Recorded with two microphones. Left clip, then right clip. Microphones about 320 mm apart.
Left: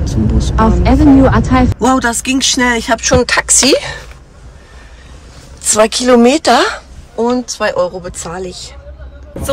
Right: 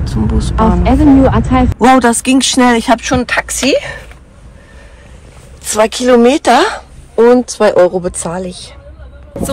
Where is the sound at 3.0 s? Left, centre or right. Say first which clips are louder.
Left 3 dB; centre.